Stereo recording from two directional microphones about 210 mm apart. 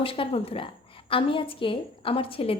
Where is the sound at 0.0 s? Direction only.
25° left (ahead or behind).